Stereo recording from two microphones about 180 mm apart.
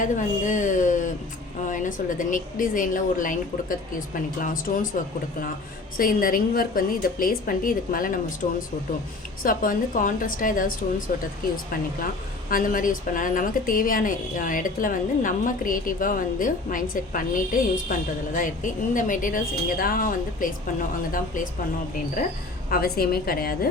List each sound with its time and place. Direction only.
0.0 s a woman's voice: 45° left (ahead or behind)
6.0 s a woman's voice: 50° left (ahead or behind)
12.5 s a woman's voice: 50° left (ahead or behind)
22.7 s a woman's voice: 55° left (ahead or behind)